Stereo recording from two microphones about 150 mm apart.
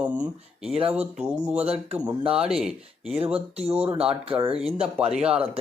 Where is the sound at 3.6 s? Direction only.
40° right (ahead or behind).